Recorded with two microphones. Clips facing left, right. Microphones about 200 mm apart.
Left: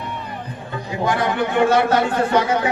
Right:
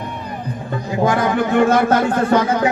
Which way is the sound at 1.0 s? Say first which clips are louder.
Right 3 dB; 45° right (ahead or behind).